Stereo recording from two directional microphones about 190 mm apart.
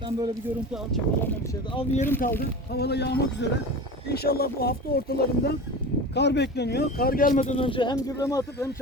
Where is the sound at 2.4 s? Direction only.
55° left (ahead or behind).